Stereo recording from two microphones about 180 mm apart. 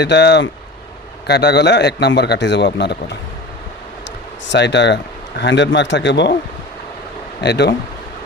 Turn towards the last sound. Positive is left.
turn(degrees=70)  # may be behind; listen again after turning